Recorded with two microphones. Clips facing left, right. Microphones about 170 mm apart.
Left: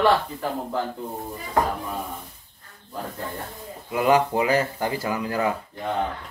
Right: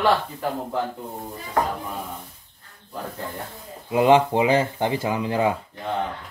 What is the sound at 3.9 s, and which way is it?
Speech, 25° right (ahead or behind).